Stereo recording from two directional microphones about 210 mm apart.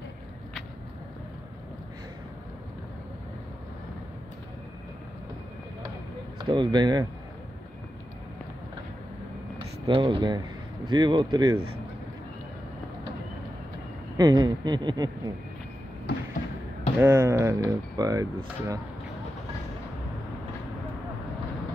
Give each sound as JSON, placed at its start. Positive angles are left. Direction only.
{"t": 6.3, "sound": "speech", "side_deg": -20}
{"t": 9.8, "sound": "speech", "side_deg": -25}
{"t": 14.1, "sound": "speech", "side_deg": -20}
{"t": 17.0, "sound": "speech", "side_deg": -10}